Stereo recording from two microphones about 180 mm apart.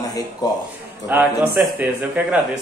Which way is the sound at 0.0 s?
20° left (ahead or behind).